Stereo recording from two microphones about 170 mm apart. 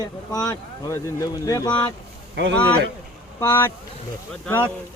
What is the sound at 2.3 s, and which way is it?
Speech, 90° right.